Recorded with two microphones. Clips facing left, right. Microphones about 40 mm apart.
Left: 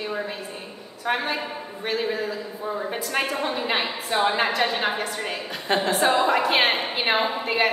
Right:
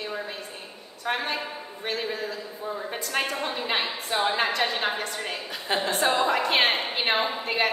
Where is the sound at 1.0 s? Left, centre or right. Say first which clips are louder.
Left 3 dB; centre.